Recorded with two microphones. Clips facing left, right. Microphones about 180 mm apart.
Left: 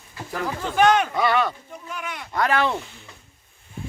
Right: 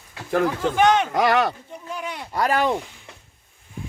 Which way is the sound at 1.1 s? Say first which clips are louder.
Right 2 dB; 85° right.